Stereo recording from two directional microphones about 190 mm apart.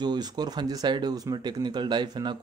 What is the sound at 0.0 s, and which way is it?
Speech, 20° right (ahead or behind).